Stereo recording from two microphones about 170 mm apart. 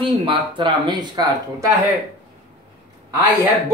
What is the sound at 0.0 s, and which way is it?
Speech, 30° right (ahead or behind).